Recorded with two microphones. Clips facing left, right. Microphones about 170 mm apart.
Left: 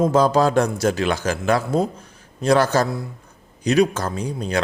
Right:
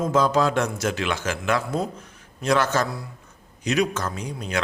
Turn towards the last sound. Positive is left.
turn(degrees=35)  # may be behind; listen again after turning